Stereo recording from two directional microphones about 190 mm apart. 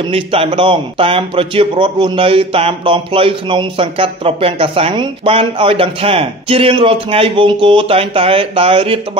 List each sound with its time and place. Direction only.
0.1 s a man's voice: 30° right (ahead or behind)